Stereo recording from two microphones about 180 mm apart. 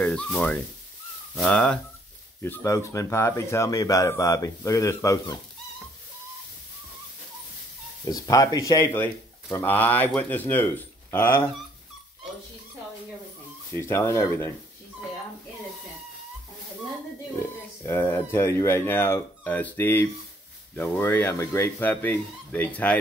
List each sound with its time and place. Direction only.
0.0 s speech: 5° left (ahead or behind)
8.1 s speech: 20° left (ahead or behind)
13.7 s speech: 15° left (ahead or behind)
17.8 s speech: 15° left (ahead or behind)